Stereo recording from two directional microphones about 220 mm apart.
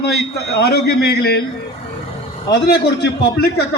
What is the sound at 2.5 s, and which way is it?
A man's voice, 50° left (ahead or behind).